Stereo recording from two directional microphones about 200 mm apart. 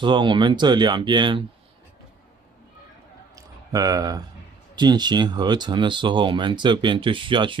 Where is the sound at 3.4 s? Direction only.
15° right (ahead or behind).